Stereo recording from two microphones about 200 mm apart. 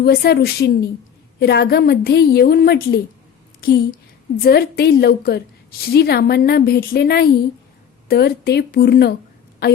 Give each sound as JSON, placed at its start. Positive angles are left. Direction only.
{"t": 0.0, "sound": "a woman's voice", "side_deg": 50}